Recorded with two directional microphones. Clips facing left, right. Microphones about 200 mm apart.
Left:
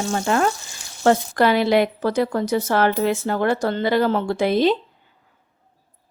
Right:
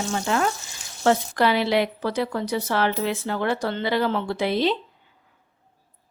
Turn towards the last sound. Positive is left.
turn(degrees=45)  # may be behind; listen again after turning